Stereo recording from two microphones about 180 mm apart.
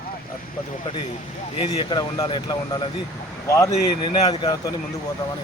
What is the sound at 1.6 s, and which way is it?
Speech, 25° left (ahead or behind).